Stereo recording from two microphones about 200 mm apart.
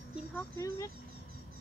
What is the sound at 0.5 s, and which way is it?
Speech, 15° left (ahead or behind).